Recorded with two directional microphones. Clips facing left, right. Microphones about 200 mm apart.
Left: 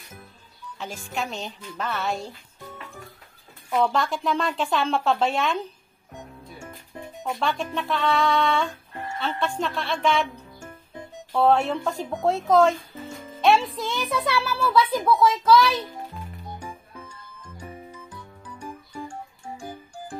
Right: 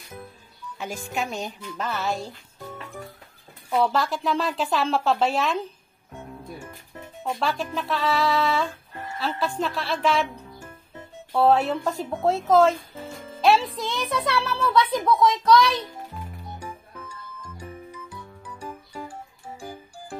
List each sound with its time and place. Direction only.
0.7 s a woman's voice: 10° right (ahead or behind)
3.7 s a woman's voice: 5° right (ahead or behind)
7.2 s a woman's voice: centre (ahead or behind)
11.3 s a woman's voice: centre (ahead or behind)